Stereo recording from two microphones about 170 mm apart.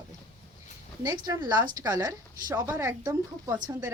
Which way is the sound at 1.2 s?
20° right (ahead or behind).